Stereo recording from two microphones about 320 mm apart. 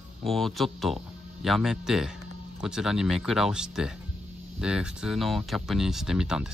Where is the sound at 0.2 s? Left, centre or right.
Centre.